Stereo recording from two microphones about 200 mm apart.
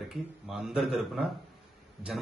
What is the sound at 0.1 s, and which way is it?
Speech, centre (ahead or behind).